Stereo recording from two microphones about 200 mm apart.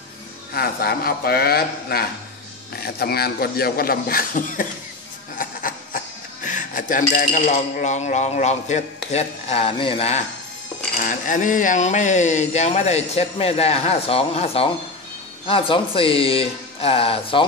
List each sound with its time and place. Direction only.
0.5 s a man's voice: 50° left (ahead or behind); by 10.2 s 30° left (ahead or behind)
11.0 s speech: 40° left (ahead or behind)